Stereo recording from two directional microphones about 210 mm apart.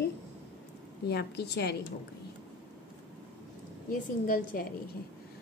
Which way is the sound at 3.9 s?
40° left (ahead or behind).